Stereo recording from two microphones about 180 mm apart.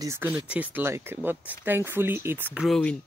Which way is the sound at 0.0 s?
15° right (ahead or behind).